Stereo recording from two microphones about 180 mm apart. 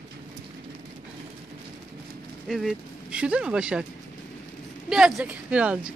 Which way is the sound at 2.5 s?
5° right (ahead or behind).